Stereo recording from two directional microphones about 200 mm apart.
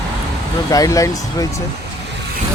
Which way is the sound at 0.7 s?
15° left (ahead or behind).